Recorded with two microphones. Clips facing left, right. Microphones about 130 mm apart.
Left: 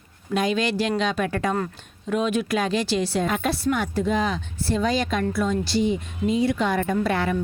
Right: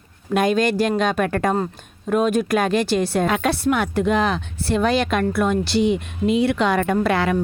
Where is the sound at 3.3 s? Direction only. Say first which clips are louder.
Right 4 dB; 75° right (ahead or behind).